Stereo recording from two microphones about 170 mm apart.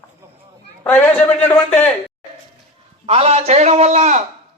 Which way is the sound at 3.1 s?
35° right (ahead or behind).